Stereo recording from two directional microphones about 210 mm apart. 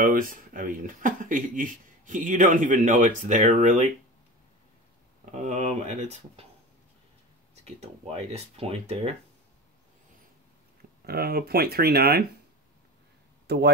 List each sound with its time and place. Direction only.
0.0 s speech: 40° right (ahead or behind)
5.2 s speech: 35° right (ahead or behind)
7.6 s speech: 30° right (ahead or behind)
11.1 s speech: 45° right (ahead or behind)
13.5 s speech: 50° right (ahead or behind)